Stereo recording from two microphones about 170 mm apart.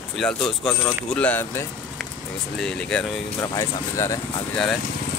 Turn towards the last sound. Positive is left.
turn(degrees=0)  # may be behind; listen again after turning